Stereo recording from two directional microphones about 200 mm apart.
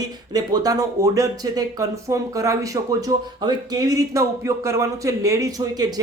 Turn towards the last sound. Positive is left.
turn(degrees=-20)  # may be behind; listen again after turning